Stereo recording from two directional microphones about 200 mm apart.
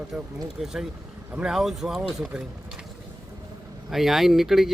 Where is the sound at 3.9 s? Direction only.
Centre (ahead or behind).